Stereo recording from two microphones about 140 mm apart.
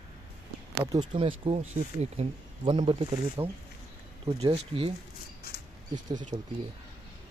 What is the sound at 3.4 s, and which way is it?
Speech, 30° right (ahead or behind).